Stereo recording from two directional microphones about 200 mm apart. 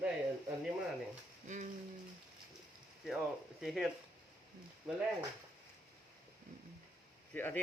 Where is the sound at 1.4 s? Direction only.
40° right (ahead or behind).